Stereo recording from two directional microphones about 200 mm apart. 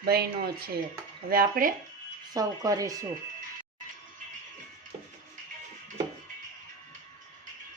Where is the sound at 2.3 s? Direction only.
15° right (ahead or behind).